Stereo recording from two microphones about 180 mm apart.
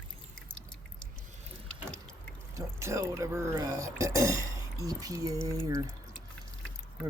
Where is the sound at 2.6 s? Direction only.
15° right (ahead or behind).